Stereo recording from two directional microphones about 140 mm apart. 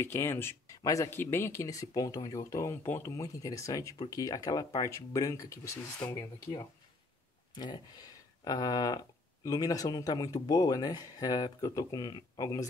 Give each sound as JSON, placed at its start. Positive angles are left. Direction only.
{"t": 0.0, "sound": "speech", "side_deg": 15}